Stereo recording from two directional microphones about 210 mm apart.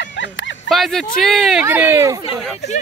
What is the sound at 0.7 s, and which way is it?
Speech, centre (ahead or behind).